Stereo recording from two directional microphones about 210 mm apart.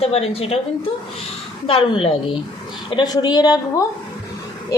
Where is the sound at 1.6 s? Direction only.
25° left (ahead or behind).